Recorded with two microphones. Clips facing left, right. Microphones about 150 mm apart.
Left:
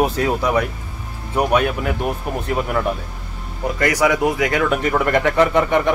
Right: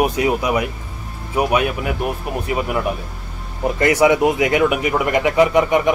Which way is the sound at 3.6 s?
25° right (ahead or behind).